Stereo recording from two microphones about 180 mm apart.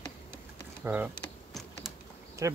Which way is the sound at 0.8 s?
10° right (ahead or behind).